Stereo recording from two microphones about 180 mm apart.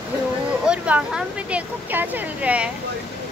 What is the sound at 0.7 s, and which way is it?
Speech, 5° right (ahead or behind).